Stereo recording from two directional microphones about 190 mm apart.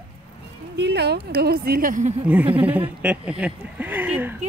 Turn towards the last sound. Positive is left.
turn(degrees=-10)  # may be behind; listen again after turning